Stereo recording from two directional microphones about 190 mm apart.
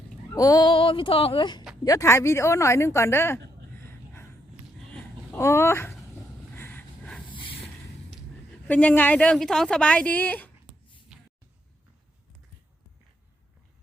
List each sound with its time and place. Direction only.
0.3 s a woman's voice: 20° left (ahead or behind)
3.8 s a sound: 15° left (ahead or behind)
6.5 s vehicle: 10° left (ahead or behind)
7.3 s vehicle: 25° left (ahead or behind)
8.6 s a woman's voice: 10° left (ahead or behind)
11.1 s a sound: 5° right (ahead or behind)